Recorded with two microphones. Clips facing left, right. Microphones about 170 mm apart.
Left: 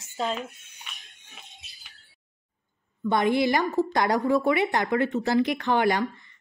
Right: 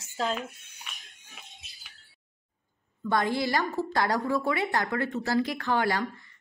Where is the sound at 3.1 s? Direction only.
20° left (ahead or behind).